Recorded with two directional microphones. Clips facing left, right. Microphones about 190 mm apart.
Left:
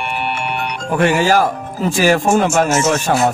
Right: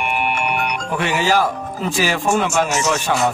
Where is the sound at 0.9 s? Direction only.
50° left (ahead or behind).